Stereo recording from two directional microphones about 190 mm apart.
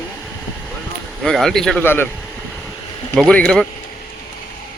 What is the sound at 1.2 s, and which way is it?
Speech, centre (ahead or behind).